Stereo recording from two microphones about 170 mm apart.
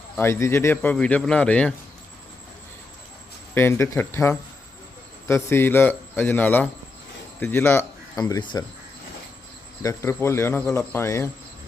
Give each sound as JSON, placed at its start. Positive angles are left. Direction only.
{"t": 0.2, "sound": "a man's voice", "side_deg": 15}
{"t": 3.5, "sound": "a man's voice", "side_deg": 15}
{"t": 9.8, "sound": "a man's voice", "side_deg": 15}